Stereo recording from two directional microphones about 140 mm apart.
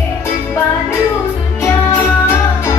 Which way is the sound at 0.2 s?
20° left (ahead or behind).